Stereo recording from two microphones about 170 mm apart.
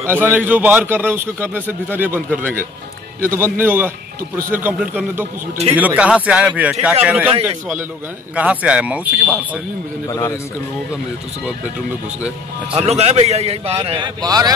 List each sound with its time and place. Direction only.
0.0 s a man's voice: 15° right (ahead or behind)
3.3 s a man's voice: 15° right (ahead or behind)
8.4 s a man's voice: 5° right (ahead or behind)
10.0 s a man's voice: 15° left (ahead or behind)
12.7 s a man's voice: 40° right (ahead or behind); by 14.5 s 20° right (ahead or behind)